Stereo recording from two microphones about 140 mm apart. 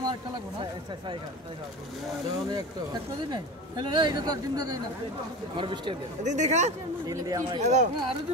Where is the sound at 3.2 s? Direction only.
35° right (ahead or behind).